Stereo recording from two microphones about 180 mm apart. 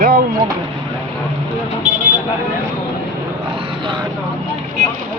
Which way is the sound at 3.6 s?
25° right (ahead or behind).